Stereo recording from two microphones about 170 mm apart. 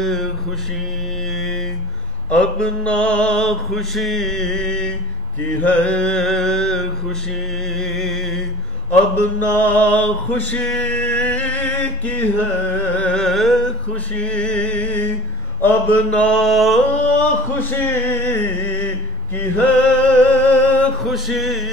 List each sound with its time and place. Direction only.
0.0 s mantra: centre (ahead or behind)
2.3 s mantra: 5° left (ahead or behind)
7.7 s music: 5° left (ahead or behind)
9.4 s male singing: 10° left (ahead or behind)
12.9 s a sound: 5° left (ahead or behind)